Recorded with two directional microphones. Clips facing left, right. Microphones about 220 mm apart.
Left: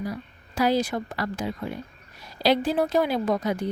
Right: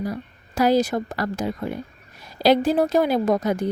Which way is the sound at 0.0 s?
45° right (ahead or behind).